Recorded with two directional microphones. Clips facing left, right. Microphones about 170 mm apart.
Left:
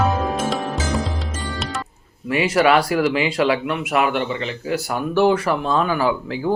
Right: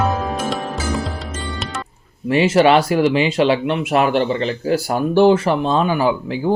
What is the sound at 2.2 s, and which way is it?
Speech, 25° right (ahead or behind).